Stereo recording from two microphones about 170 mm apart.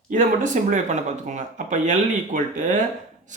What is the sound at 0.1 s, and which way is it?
Speech, 50° right (ahead or behind).